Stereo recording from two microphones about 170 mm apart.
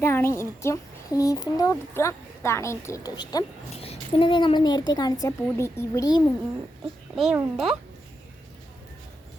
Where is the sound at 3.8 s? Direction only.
35° left (ahead or behind).